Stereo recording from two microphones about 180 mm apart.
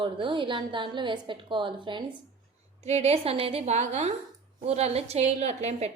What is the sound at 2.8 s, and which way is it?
A woman's voice, 35° right (ahead or behind).